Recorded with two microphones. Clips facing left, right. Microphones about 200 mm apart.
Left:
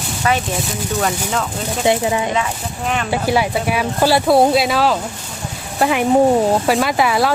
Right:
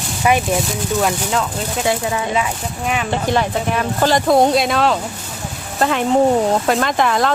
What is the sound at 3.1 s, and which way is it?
Speech, 10° left (ahead or behind).